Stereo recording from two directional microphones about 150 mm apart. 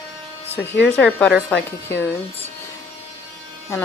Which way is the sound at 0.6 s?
5° left (ahead or behind).